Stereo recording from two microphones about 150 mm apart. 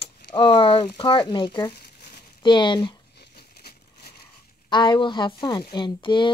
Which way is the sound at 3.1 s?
90° left.